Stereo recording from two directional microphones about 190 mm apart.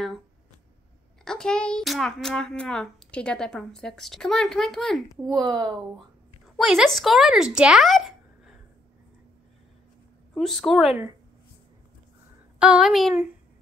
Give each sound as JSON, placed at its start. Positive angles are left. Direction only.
{"t": 1.2, "sound": "a child's voice", "side_deg": 5}
{"t": 5.2, "sound": "speech", "side_deg": -20}
{"t": 6.5, "sound": "speech", "side_deg": 0}
{"t": 10.3, "sound": "a child's voice", "side_deg": 0}
{"t": 12.5, "sound": "a child's voice", "side_deg": -5}